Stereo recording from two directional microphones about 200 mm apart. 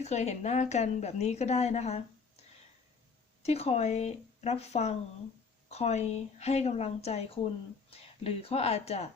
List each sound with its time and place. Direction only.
0.0 s a woman's voice: 35° left (ahead or behind)
3.4 s a woman's voice: 30° left (ahead or behind)